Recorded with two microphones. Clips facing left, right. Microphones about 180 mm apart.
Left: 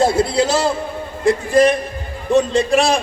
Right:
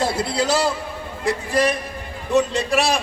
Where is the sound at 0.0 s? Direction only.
45° left (ahead or behind).